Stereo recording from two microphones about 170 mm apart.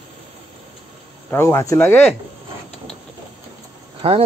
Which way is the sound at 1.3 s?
15° left (ahead or behind).